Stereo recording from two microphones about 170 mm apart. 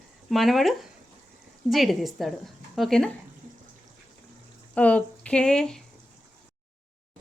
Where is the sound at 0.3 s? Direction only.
Centre (ahead or behind).